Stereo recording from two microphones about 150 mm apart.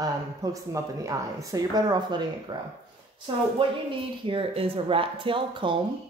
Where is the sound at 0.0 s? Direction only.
25° right (ahead or behind).